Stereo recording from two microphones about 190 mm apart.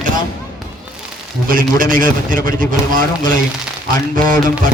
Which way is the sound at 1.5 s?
45° right (ahead or behind).